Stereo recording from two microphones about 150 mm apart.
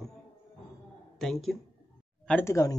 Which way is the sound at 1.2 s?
Centre (ahead or behind).